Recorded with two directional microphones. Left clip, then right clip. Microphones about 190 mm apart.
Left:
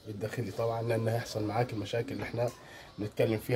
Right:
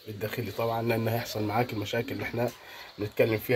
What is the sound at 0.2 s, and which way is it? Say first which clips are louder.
Speech: right 3 dB; 10° right (ahead or behind).